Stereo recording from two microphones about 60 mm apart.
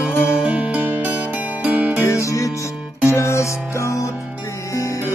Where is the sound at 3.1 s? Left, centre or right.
Left.